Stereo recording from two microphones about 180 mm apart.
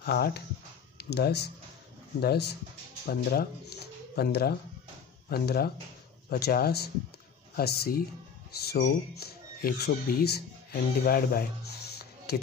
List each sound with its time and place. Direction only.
0.0 s speech: 60° left (ahead or behind)